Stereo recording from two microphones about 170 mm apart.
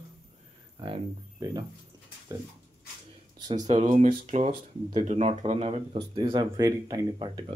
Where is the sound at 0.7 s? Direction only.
30° right (ahead or behind).